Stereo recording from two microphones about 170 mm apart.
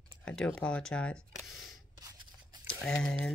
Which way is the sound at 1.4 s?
Centre (ahead or behind).